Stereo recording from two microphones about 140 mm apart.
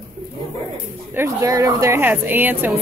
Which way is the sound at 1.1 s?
20° right (ahead or behind).